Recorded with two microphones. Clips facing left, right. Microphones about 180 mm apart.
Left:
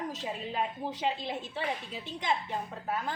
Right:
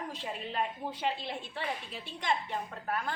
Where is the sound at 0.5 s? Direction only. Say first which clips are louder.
Even; 15° left (ahead or behind).